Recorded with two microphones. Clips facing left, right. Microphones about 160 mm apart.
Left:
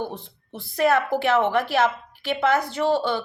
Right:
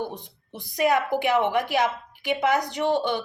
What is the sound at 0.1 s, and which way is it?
Speech, 15° right (ahead or behind).